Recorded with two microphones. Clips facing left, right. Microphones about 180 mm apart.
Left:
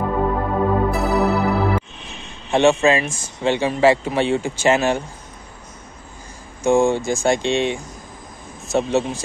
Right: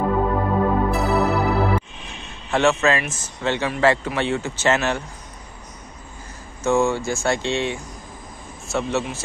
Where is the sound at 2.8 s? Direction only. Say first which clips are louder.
Left 3 dB; 20° left (ahead or behind).